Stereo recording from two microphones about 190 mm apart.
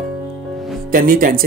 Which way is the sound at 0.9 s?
45° right (ahead or behind).